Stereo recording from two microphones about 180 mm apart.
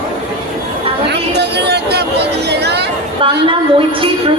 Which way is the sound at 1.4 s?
70° right (ahead or behind).